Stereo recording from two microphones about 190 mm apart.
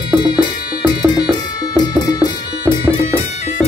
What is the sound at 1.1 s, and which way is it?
Music, 20° left (ahead or behind).